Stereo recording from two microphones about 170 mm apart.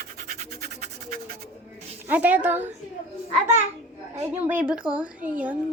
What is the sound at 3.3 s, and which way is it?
Speech, 40° right (ahead or behind).